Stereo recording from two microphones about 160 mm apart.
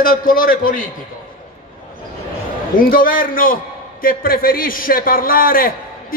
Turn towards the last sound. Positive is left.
turn(degrees=65)  # may be behind; listen again after turning